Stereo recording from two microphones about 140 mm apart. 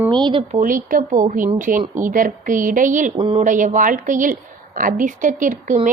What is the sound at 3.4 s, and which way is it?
A woman's voice, 65° right (ahead or behind).